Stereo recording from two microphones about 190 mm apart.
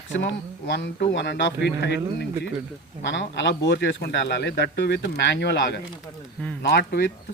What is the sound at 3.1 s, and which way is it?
Speech, 65° left (ahead or behind).